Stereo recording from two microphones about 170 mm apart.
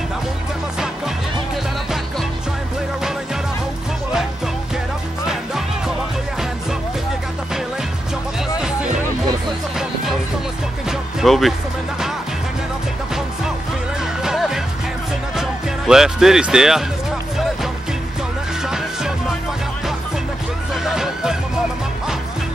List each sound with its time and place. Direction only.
10.9 s music: centre (ahead or behind)
14.2 s music: 5° right (ahead or behind)
15.9 s speech: 5° right (ahead or behind)
18.6 s music: 5° right (ahead or behind)
20.7 s music: centre (ahead or behind)